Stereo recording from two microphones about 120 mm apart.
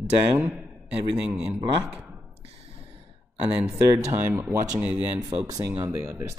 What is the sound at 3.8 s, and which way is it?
Speech, 25° right (ahead or behind).